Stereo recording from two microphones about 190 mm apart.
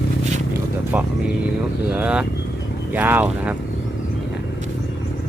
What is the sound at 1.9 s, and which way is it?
Speech, 5° right (ahead or behind).